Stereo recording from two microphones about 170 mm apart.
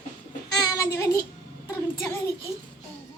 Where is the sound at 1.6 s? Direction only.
15° left (ahead or behind).